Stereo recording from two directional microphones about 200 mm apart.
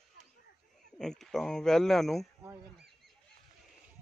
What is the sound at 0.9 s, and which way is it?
Speech, centre (ahead or behind).